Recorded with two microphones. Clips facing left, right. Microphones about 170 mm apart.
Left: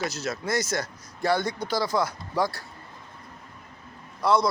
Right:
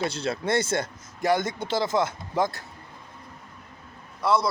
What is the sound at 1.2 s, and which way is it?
Speech, 20° right (ahead or behind).